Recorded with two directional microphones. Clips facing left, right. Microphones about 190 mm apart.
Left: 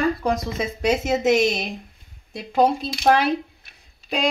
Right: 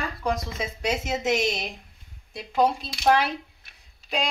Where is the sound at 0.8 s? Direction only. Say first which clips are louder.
Left 7 dB; 50° left (ahead or behind).